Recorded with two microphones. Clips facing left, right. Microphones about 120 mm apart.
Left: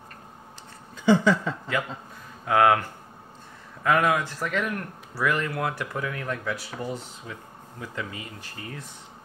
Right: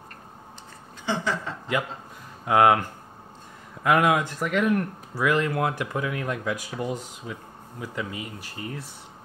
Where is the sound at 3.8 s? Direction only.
15° right (ahead or behind).